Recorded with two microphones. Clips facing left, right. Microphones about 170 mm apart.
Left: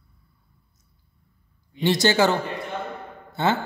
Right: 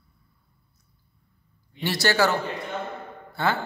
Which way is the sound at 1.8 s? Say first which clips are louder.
Left 4 dB; 20° left (ahead or behind).